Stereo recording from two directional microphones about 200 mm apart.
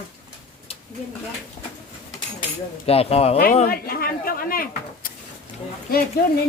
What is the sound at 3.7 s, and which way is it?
Speech, 50° left (ahead or behind).